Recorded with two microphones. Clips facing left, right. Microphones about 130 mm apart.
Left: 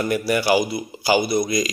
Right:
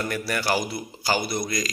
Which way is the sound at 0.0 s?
15° left (ahead or behind).